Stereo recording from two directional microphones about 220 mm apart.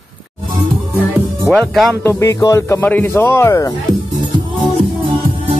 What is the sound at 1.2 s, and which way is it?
Music, 10° right (ahead or behind).